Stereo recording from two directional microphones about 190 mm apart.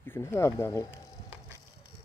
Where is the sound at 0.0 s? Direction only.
10° left (ahead or behind).